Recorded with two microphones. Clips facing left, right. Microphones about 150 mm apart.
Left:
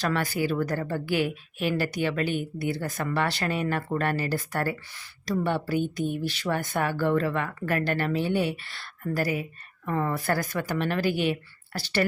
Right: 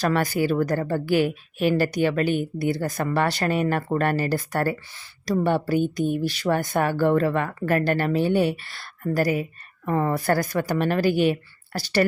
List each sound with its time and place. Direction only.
0.0 s a woman's voice: 40° right (ahead or behind)